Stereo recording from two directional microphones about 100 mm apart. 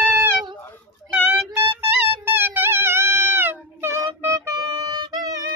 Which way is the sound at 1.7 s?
25° right (ahead or behind).